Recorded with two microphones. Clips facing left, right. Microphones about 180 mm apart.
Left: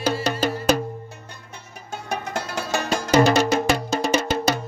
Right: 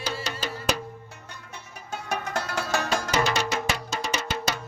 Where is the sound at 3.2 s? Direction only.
40° left (ahead or behind).